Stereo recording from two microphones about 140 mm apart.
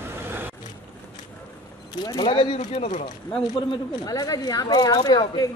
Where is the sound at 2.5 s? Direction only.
50° left (ahead or behind).